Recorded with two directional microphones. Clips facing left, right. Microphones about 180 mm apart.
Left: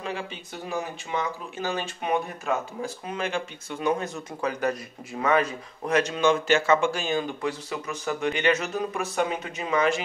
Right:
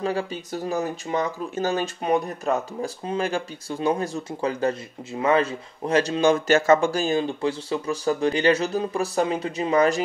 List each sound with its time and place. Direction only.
0.0 s speech: 40° right (ahead or behind)